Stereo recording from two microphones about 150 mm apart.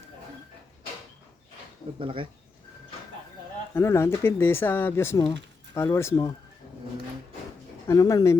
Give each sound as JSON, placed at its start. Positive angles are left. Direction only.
{"t": 2.0, "sound": "speech", "side_deg": -35}
{"t": 3.8, "sound": "speech", "side_deg": 15}
{"t": 7.9, "sound": "speech", "side_deg": 20}